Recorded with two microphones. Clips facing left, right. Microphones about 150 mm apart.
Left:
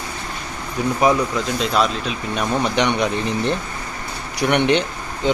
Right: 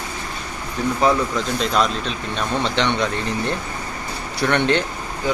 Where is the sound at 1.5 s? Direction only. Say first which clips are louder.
Left 1 dB; centre (ahead or behind).